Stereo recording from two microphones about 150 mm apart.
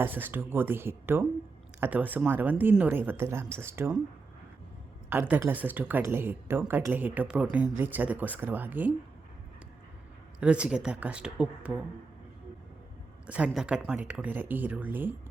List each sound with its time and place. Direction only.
0.0 s speech: 15° right (ahead or behind)
5.0 s speech: 15° right (ahead or behind)
10.4 s speech: 5° right (ahead or behind)
13.2 s speech: 10° right (ahead or behind)